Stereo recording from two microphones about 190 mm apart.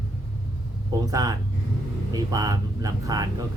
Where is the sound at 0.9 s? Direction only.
20° right (ahead or behind).